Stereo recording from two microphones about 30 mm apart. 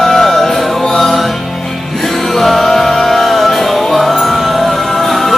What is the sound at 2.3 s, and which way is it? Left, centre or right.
Music, centre.